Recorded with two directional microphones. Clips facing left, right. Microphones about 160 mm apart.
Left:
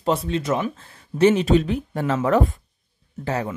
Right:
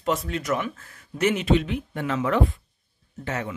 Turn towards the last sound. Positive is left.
turn(degrees=35)  # may be behind; listen again after turning